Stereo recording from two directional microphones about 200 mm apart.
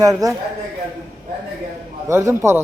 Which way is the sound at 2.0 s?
15° right (ahead or behind).